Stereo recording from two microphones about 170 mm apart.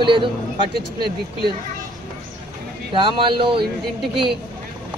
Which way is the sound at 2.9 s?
30° right (ahead or behind).